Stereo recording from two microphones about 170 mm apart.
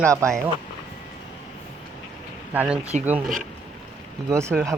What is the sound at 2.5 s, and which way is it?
Speech, 10° right (ahead or behind).